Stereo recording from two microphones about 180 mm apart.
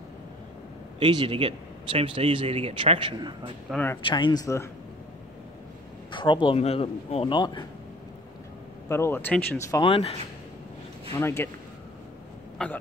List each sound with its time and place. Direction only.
0.9 s speech: 30° right (ahead or behind)
3.7 s speech: 10° left (ahead or behind)
4.0 s speech: 25° left (ahead or behind)
6.1 s speech: 25° left (ahead or behind)
8.8 s speech: 15° left (ahead or behind)
9.8 s speech: 30° left (ahead or behind)
11.1 s speech: 15° left (ahead or behind)
12.6 s speech: 5° left (ahead or behind)